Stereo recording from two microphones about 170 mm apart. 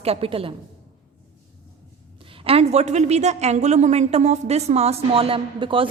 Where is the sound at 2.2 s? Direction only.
30° right (ahead or behind).